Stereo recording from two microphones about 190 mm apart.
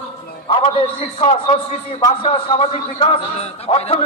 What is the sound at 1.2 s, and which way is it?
A man's voice, 30° left (ahead or behind).